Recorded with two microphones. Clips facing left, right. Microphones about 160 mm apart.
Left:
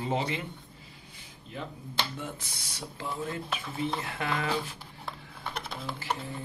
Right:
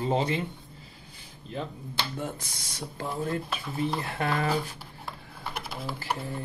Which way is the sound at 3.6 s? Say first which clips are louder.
Right 3 dB; centre (ahead or behind).